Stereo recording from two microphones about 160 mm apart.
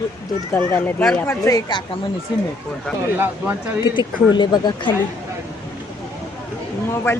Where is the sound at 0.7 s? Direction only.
10° left (ahead or behind).